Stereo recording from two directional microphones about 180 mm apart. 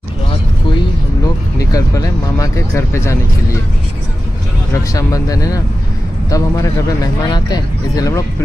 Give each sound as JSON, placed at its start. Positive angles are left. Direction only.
{"t": 1.2, "sound": "speech", "side_deg": 20}
{"t": 4.7, "sound": "speech", "side_deg": 20}